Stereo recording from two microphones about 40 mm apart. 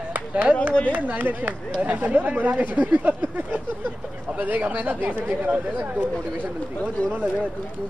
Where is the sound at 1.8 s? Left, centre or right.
Right.